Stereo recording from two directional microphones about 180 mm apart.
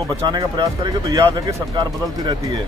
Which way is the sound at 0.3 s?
25° right (ahead or behind).